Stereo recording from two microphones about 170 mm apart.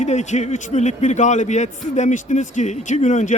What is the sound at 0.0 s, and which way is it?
A man's voice, 45° left (ahead or behind).